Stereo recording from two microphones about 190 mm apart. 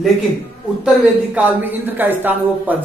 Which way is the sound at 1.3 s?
10° right (ahead or behind).